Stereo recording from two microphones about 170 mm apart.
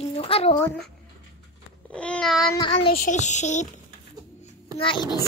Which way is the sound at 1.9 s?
5° left (ahead or behind).